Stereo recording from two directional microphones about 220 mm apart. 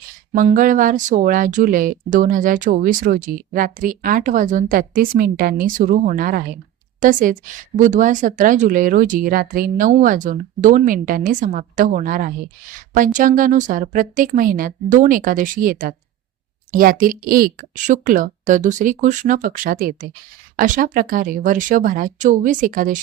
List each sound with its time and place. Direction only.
0.3 s a woman's voice: 35° right (ahead or behind)